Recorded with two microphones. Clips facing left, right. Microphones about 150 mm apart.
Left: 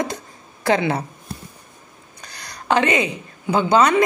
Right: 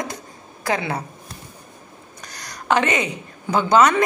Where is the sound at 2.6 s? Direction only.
25° left (ahead or behind).